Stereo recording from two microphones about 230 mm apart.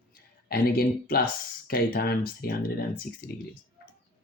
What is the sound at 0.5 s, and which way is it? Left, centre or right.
Speech, left.